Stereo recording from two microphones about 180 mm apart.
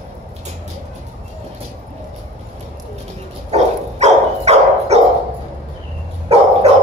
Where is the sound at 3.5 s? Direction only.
35° right (ahead or behind).